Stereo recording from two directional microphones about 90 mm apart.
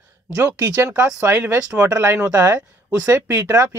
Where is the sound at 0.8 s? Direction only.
30° right (ahead or behind).